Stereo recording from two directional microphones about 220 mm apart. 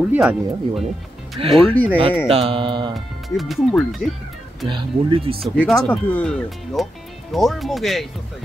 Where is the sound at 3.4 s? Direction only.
Centre (ahead or behind).